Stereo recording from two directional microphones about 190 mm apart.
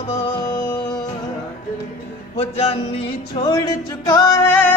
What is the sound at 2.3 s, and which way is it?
Music, 30° left (ahead or behind).